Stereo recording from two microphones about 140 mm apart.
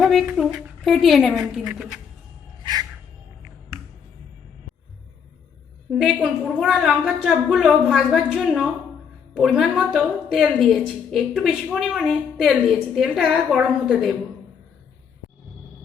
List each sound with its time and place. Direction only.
0.0 s a woman's voice: centre (ahead or behind)
6.0 s a woman's voice: centre (ahead or behind)